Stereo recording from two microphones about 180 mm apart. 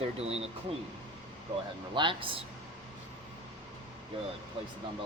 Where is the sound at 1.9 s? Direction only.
30° right (ahead or behind).